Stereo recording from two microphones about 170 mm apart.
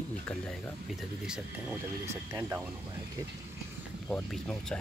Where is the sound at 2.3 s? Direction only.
10° right (ahead or behind).